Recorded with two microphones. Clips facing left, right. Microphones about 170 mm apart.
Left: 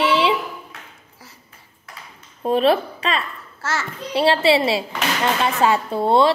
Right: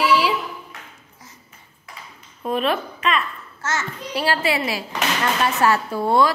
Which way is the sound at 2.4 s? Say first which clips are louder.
Left 5 dB; 30° left (ahead or behind).